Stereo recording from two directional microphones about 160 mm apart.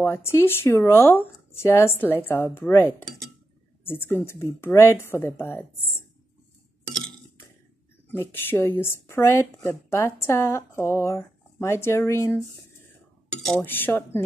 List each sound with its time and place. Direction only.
0.0 s speech: 15° left (ahead or behind)
8.2 s speech: 15° left (ahead or behind)
13.5 s speech: 10° left (ahead or behind)